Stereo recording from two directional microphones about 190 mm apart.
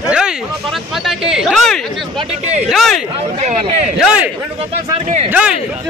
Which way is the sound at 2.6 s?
Centre (ahead or behind).